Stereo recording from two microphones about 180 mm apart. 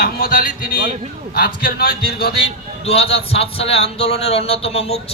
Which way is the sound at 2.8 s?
35° left (ahead or behind).